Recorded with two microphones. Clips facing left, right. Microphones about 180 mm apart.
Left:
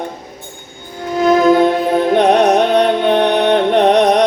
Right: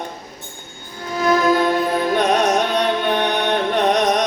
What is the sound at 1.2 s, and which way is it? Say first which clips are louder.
Music: left 6 dB; 60° left (ahead or behind).